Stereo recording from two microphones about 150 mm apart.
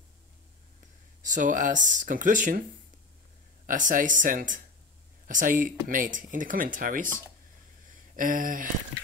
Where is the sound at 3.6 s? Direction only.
60° right (ahead or behind).